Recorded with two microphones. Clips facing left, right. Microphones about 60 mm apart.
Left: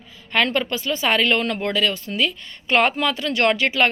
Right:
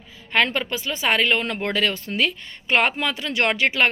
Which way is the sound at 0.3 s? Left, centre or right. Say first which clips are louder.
Left 1 dB; centre.